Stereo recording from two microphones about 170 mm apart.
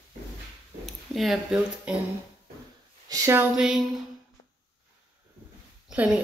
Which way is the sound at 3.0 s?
20° right (ahead or behind).